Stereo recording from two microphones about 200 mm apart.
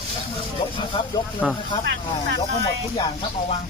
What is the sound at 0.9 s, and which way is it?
Speech, 25° left (ahead or behind).